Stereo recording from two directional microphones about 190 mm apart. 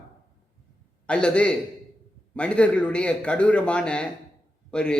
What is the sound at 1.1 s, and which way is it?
A man's voice, 5° left (ahead or behind).